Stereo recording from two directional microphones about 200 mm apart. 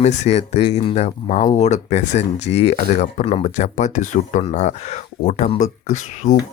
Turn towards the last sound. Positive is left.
turn(degrees=35)  # may be behind; listen again after turning